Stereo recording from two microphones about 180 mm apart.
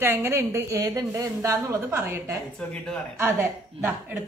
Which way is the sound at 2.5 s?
5° left (ahead or behind).